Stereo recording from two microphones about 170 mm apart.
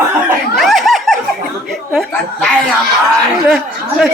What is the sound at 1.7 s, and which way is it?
Chuckle, centre (ahead or behind).